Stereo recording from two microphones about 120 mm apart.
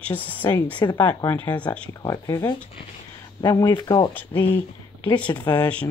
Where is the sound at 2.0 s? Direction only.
30° left (ahead or behind).